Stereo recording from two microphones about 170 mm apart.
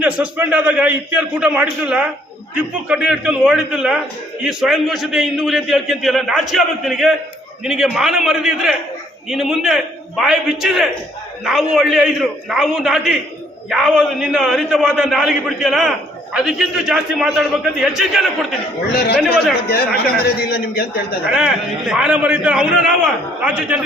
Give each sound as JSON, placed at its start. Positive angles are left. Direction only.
{"t": 0.0, "sound": "a man's voice", "side_deg": -10}
{"t": 18.9, "sound": "a man's voice", "side_deg": 70}
{"t": 21.2, "sound": "a man's voice", "side_deg": -5}